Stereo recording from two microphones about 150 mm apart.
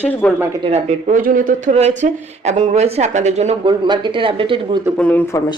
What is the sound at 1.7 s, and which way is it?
A woman's voice, 50° right (ahead or behind).